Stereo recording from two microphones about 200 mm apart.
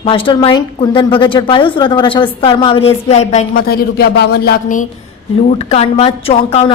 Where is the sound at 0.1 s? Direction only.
25° left (ahead or behind).